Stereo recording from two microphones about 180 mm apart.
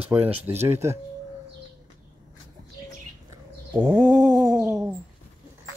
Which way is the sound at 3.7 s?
20° right (ahead or behind).